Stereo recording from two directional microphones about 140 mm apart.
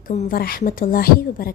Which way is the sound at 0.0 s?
65° left (ahead or behind).